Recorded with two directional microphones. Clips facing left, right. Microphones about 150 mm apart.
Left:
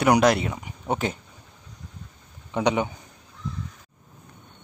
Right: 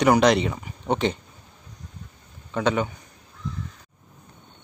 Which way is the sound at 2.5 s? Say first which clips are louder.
Even; 15° left (ahead or behind).